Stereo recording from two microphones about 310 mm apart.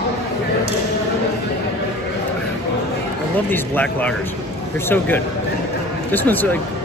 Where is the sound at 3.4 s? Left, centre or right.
Centre.